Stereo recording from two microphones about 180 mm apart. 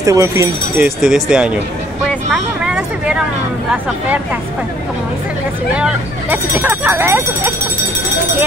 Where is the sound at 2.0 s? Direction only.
5° right (ahead or behind).